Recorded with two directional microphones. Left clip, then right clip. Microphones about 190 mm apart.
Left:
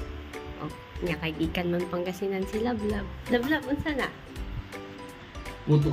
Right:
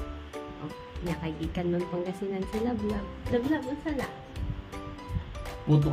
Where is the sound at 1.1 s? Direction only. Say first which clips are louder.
Left 5 dB; 15° left (ahead or behind).